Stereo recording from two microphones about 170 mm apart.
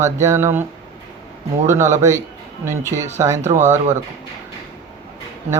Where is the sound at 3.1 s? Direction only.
15° right (ahead or behind).